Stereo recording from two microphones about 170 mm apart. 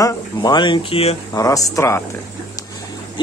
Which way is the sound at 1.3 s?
20° left (ahead or behind).